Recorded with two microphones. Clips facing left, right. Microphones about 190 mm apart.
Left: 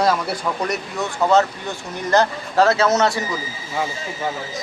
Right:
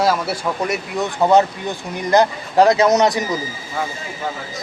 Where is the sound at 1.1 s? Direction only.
15° right (ahead or behind).